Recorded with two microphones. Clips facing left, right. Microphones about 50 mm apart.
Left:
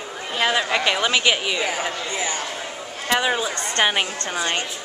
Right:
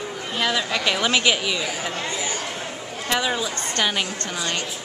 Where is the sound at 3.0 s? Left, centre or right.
Centre.